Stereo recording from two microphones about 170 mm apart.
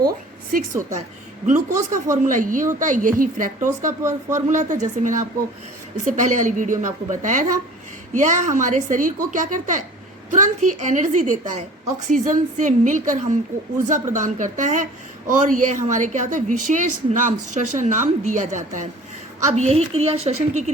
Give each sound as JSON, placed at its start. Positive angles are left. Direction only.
{"t": 0.5, "sound": "a woman's voice", "side_deg": -55}